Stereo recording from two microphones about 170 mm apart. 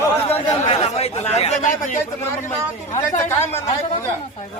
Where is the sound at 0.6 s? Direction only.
35° left (ahead or behind).